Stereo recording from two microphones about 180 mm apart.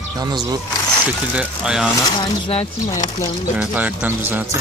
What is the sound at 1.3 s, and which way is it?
Speech, 5° right (ahead or behind).